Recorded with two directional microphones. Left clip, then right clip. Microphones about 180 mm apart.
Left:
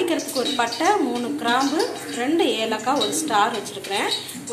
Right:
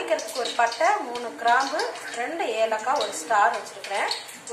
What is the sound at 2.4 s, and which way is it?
Speech, 15° left (ahead or behind).